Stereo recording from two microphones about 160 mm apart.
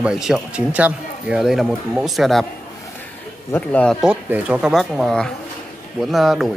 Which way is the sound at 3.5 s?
10° left (ahead or behind).